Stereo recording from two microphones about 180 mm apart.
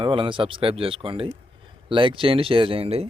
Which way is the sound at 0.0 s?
30° right (ahead or behind).